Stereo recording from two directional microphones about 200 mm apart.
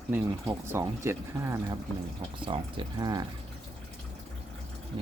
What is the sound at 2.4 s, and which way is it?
Speech, 25° right (ahead or behind).